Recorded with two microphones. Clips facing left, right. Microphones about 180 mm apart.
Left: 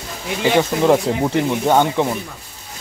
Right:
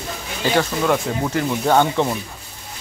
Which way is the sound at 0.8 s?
25° left (ahead or behind).